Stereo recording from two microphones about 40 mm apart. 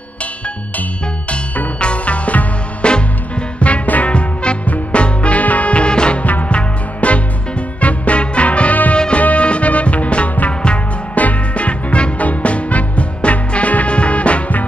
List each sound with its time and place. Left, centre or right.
1.8 s music: left
4.1 s music: left
6.2 s music: left
8.9 s music: left